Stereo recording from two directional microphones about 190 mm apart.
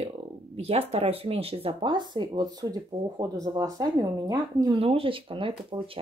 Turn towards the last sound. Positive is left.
turn(degrees=-25)  # may be behind; listen again after turning